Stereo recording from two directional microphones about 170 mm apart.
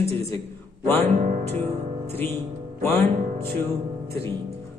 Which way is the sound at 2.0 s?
10° left (ahead or behind).